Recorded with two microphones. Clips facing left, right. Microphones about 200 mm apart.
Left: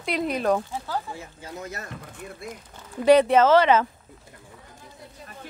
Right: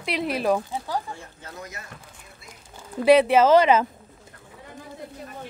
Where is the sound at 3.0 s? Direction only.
10° right (ahead or behind).